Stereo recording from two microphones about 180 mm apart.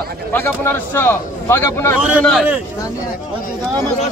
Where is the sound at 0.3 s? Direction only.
10° left (ahead or behind).